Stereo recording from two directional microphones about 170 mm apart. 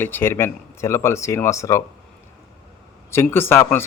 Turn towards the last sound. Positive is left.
turn(degrees=15)  # may be behind; listen again after turning